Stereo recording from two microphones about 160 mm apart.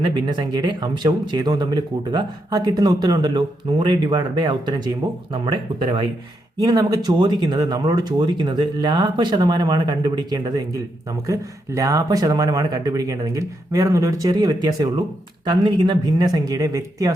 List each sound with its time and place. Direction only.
0.0 s speech: 30° right (ahead or behind)